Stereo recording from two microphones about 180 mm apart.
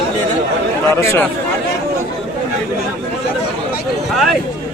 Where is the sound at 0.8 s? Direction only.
15° left (ahead or behind).